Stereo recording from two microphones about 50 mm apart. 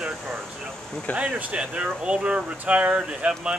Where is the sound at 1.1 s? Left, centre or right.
Right.